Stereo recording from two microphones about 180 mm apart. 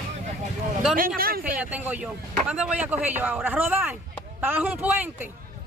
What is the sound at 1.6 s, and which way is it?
Speech, 10° right (ahead or behind).